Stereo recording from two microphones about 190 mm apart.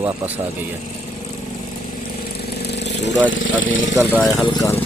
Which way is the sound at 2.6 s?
60° left (ahead or behind).